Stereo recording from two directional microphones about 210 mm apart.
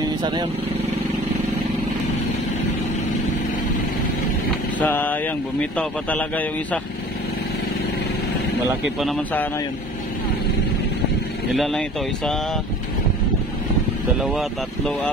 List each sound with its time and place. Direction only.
0.2 s speech: 20° right (ahead or behind)
4.7 s a man's voice: 10° left (ahead or behind)
9.0 s a man's voice: 5° left (ahead or behind)
11.5 s a man's voice: centre (ahead or behind)